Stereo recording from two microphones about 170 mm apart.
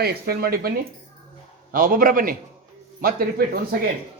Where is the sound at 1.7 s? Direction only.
55° right (ahead or behind).